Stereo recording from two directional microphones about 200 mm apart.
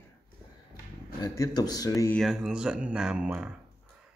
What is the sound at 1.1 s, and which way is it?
Speech, 20° left (ahead or behind).